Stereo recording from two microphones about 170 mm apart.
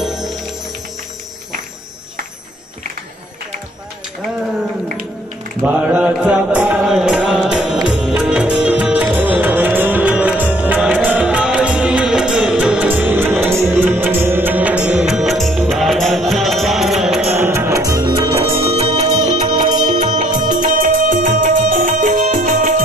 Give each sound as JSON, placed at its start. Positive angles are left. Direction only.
{"t": 0.0, "sound": "music", "side_deg": 0}
{"t": 5.6, "sound": "mantra", "side_deg": -10}
{"t": 13.7, "sound": "music", "side_deg": -10}
{"t": 17.4, "sound": "music", "side_deg": -15}
{"t": 18.6, "sound": "music", "side_deg": -35}
{"t": 19.6, "sound": "music", "side_deg": -25}
{"t": 19.9, "sound": "music", "side_deg": -50}